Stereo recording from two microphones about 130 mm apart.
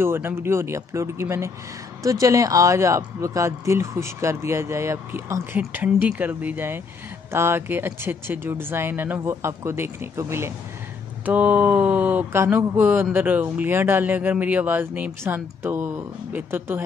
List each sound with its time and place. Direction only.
0.0 s speech: 20° right (ahead or behind)